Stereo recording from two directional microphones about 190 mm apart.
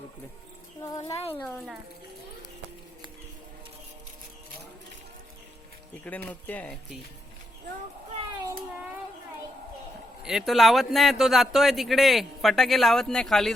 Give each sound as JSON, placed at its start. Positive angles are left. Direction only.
{"t": 0.8, "sound": "speech", "side_deg": 20}
{"t": 1.5, "sound": "a man's voice", "side_deg": 0}
{"t": 6.1, "sound": "speech", "side_deg": 10}
{"t": 10.2, "sound": "a man's voice", "side_deg": 0}